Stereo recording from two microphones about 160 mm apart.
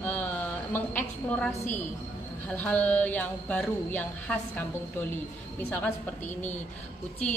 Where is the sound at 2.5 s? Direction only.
10° left (ahead or behind).